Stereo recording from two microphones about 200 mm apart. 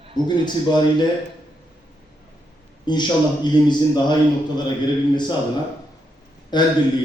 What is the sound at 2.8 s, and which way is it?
A man's voice, 20° left (ahead or behind).